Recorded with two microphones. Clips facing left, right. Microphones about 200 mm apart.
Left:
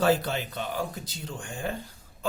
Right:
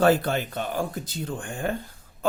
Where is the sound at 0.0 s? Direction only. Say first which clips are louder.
Right 4 dB; 55° right (ahead or behind).